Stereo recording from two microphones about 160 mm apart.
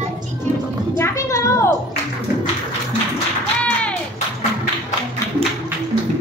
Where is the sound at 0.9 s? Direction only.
15° left (ahead or behind).